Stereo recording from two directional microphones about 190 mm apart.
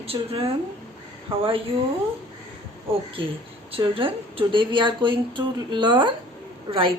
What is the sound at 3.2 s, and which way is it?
A woman's voice, 25° right (ahead or behind).